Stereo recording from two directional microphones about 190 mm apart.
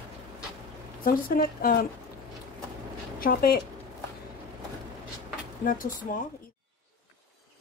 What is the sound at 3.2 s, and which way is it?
Speech, 50° left (ahead or behind).